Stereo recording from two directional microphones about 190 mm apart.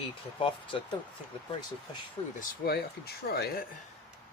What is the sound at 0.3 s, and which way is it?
Speech, 30° left (ahead or behind).